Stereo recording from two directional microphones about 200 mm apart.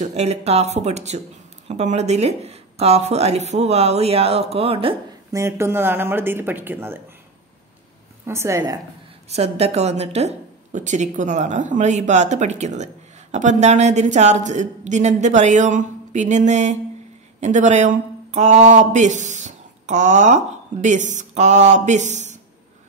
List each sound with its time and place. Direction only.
0.0 s speech: 35° right (ahead or behind)
5.3 s speech: 15° right (ahead or behind)
8.3 s speech: 15° right (ahead or behind)
9.3 s speech: 30° right (ahead or behind)